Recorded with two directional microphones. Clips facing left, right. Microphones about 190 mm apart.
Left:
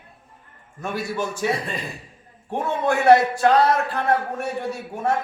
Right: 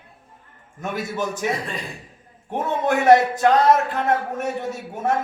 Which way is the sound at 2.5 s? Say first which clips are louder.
Right 1 dB; 20° right (ahead or behind).